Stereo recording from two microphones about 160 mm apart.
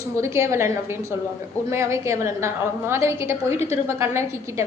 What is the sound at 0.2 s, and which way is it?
A woman's voice, 15° right (ahead or behind).